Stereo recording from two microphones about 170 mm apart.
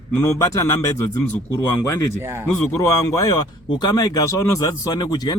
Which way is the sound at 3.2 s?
20° left (ahead or behind).